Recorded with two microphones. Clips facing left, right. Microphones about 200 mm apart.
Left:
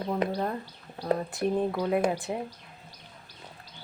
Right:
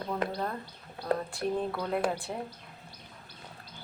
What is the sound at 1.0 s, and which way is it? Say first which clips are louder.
Speech: left 3 dB; 20° left (ahead or behind).